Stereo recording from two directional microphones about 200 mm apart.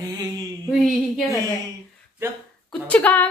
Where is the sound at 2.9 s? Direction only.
10° left (ahead or behind).